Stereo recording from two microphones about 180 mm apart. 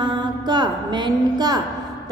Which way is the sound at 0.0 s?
25° right (ahead or behind).